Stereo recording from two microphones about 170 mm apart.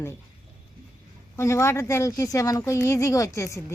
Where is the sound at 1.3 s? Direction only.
15° left (ahead or behind).